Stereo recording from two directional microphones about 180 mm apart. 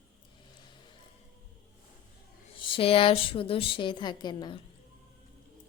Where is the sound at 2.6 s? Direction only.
30° left (ahead or behind).